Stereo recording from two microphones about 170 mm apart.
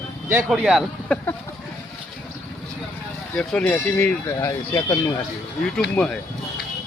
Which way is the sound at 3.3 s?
5° left (ahead or behind).